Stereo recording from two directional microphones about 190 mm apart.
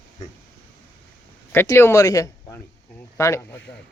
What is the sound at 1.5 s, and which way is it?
Speech, 10° left (ahead or behind).